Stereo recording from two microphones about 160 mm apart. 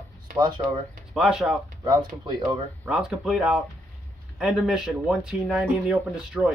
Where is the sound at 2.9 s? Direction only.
5° right (ahead or behind).